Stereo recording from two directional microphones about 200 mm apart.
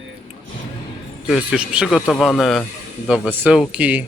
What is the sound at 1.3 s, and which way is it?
Speech, 5° right (ahead or behind).